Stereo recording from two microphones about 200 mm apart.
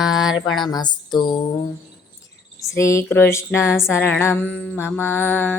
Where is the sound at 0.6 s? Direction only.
20° left (ahead or behind).